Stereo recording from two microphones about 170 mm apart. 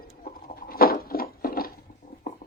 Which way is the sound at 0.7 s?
60° left (ahead or behind).